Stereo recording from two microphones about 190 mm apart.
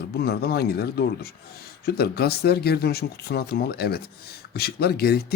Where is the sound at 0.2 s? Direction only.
55° left (ahead or behind).